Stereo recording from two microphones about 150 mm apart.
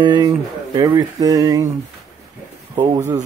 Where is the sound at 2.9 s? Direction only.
20° right (ahead or behind).